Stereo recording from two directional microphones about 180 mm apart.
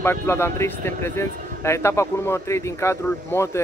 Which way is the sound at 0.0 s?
15° left (ahead or behind).